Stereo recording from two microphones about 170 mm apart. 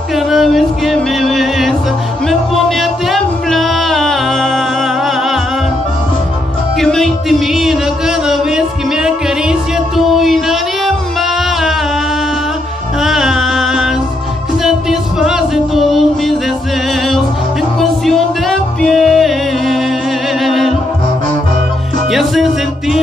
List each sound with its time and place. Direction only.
0.1 s music: centre (ahead or behind)
6.8 s music: centre (ahead or behind)
13.0 s music: centre (ahead or behind)
17.7 s music: centre (ahead or behind)
22.1 s music: centre (ahead or behind)